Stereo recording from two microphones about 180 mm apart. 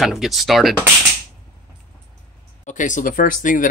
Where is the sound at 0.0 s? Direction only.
Centre (ahead or behind).